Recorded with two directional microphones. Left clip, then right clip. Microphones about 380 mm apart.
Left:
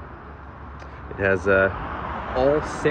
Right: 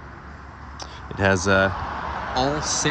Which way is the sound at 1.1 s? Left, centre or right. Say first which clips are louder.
Even; centre.